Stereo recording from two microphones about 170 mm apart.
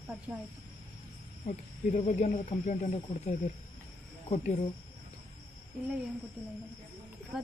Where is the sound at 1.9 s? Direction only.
45° left (ahead or behind).